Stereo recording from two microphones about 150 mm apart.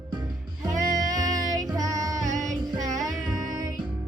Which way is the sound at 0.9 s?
25° right (ahead or behind).